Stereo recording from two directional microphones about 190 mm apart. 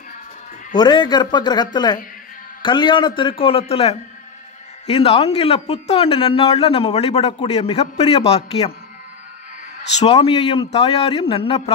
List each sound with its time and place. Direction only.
0.7 s a man's voice: 25° left (ahead or behind)
9.9 s a man's voice: 35° left (ahead or behind)